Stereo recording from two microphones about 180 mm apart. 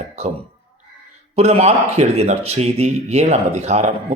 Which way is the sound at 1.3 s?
35° right (ahead or behind).